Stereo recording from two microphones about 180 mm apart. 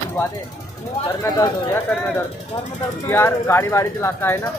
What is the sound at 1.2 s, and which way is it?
Speech, 15° left (ahead or behind).